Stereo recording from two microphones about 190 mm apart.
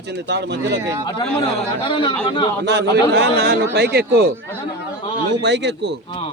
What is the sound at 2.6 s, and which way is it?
A man's voice, 60° right (ahead or behind).